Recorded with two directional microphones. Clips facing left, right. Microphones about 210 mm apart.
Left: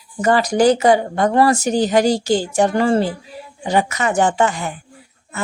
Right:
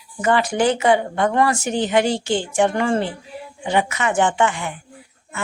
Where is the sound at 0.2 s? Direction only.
40° left (ahead or behind).